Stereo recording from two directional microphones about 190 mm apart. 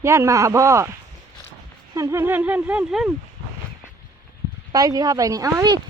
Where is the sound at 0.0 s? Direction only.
15° right (ahead or behind).